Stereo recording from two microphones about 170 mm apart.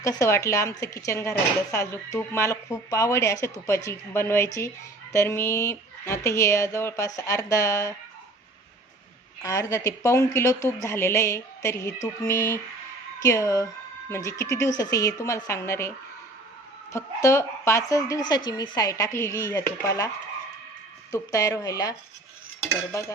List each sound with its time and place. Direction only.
0.0 s speech: 15° left (ahead or behind)
9.4 s a woman's voice: 20° left (ahead or behind)
16.9 s a woman's voice: 15° left (ahead or behind)
21.1 s a woman's voice: 20° left (ahead or behind)